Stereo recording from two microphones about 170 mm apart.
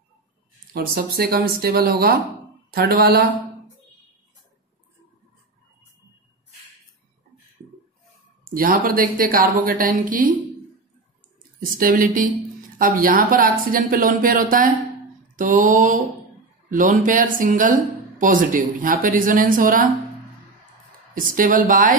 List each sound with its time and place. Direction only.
0.7 s speech: 65° right (ahead or behind)
8.5 s speech: 55° right (ahead or behind)
11.8 s speech: 55° right (ahead or behind)
21.1 s speech: 55° right (ahead or behind)